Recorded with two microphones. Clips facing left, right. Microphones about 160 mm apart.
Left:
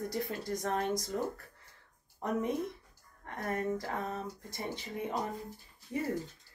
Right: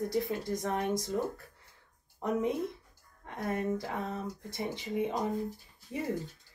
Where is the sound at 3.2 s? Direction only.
15° right (ahead or behind).